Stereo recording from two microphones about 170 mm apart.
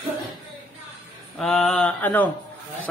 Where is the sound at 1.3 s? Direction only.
5° left (ahead or behind).